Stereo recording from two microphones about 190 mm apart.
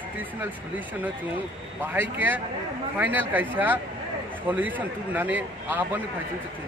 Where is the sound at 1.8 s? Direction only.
10° right (ahead or behind).